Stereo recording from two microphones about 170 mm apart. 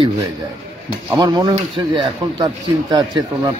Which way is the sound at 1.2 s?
25° right (ahead or behind).